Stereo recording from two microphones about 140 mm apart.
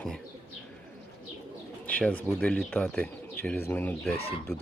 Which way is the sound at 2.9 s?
10° left (ahead or behind).